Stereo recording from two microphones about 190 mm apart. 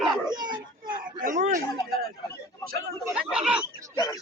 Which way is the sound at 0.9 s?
45° right (ahead or behind).